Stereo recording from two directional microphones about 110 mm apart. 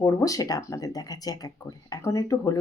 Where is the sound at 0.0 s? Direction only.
30° left (ahead or behind).